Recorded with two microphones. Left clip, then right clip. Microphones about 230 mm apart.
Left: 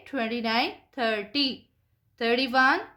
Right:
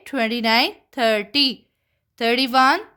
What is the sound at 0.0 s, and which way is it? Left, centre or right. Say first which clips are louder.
Speech: right 8 dB; right.